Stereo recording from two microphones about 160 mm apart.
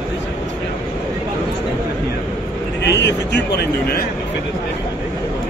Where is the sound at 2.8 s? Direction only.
90° left.